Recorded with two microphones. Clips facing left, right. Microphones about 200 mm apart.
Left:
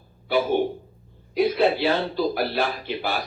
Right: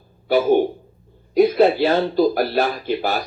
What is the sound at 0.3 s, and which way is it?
Speech, 45° right (ahead or behind).